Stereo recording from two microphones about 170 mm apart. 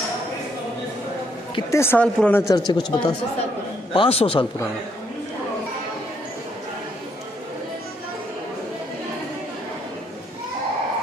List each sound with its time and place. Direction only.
1.7 s speech: 15° left (ahead or behind)
2.5 s a man's voice: 25° left (ahead or behind)